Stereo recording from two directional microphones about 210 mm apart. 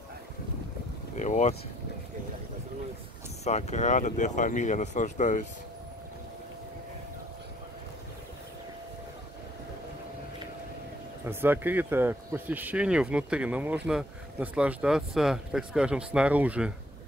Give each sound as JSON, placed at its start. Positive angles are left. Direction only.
{"t": 1.1, "sound": "speech", "side_deg": 35}
{"t": 3.4, "sound": "speech", "side_deg": 30}
{"t": 11.2, "sound": "speech", "side_deg": -10}